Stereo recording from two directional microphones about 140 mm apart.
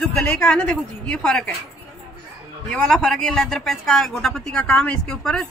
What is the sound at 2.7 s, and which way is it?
Speech, 5° left (ahead or behind).